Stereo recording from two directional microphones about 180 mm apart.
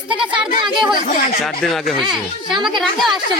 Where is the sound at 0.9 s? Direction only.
50° left (ahead or behind).